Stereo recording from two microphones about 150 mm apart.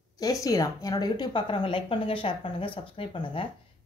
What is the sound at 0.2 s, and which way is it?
Speech, 25° left (ahead or behind).